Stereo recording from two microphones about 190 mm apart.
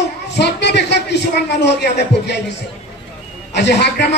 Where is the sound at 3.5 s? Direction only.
65° left (ahead or behind).